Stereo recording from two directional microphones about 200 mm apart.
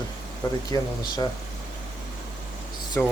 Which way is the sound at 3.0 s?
10° left (ahead or behind).